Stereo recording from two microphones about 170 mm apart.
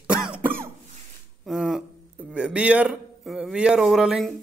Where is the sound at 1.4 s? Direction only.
Centre (ahead or behind).